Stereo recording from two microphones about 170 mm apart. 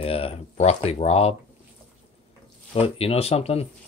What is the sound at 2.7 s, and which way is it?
Speech, 35° left (ahead or behind).